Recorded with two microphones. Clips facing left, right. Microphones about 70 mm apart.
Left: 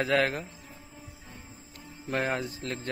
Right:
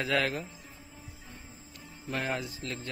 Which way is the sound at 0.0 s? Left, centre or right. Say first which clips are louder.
Left 3 dB; left.